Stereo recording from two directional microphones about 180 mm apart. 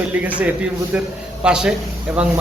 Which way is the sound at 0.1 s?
10° right (ahead or behind).